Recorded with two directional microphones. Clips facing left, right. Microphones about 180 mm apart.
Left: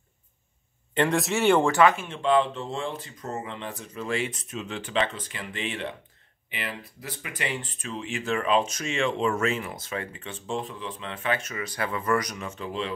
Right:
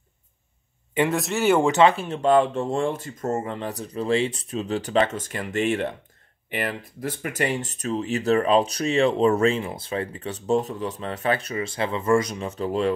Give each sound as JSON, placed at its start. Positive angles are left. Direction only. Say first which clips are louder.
{"t": 0.9, "sound": "speech", "louder": "right 1 dB", "side_deg": 0}
{"t": 1.6, "sound": "speech", "louder": "right 3 dB", "side_deg": -20}